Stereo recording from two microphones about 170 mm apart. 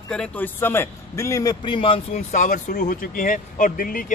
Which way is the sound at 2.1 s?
50° left (ahead or behind).